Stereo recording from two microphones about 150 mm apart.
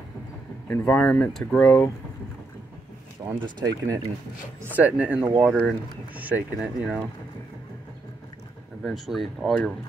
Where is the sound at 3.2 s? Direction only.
25° right (ahead or behind).